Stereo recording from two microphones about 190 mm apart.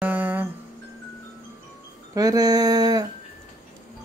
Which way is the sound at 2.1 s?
20° right (ahead or behind).